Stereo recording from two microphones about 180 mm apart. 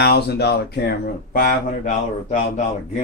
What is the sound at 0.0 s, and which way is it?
Speech, 65° left (ahead or behind).